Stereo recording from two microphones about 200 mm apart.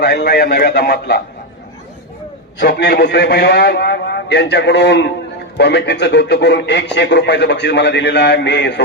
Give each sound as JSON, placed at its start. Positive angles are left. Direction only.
{"t": 0.0, "sound": "a man's voice", "side_deg": 55}
{"t": 2.6, "sound": "speech", "side_deg": 55}